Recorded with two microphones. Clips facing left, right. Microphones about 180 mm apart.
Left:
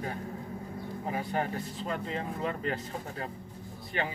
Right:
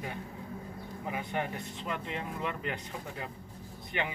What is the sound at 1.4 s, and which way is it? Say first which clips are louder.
Speech: left 3 dB; 35° left (ahead or behind).